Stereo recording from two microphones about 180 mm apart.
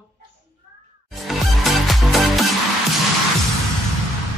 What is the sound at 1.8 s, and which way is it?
Music, centre (ahead or behind).